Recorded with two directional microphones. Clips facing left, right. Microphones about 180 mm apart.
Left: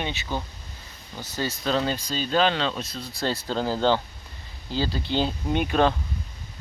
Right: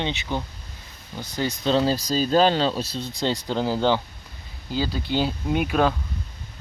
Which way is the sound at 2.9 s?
25° right (ahead or behind).